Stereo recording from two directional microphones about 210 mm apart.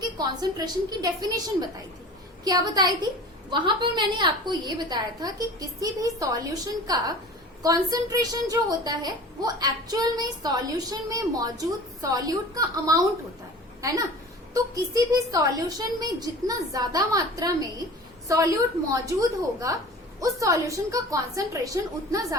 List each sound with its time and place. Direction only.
0.2 s a woman's voice: 20° right (ahead or behind)
18.9 s a woman's voice: 15° right (ahead or behind)